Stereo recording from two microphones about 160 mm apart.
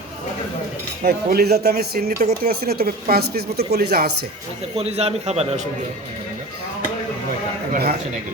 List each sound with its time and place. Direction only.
1.0 s speech: 80° right
4.7 s a man's voice: 40° right (ahead or behind)
7.7 s a sound: 85° right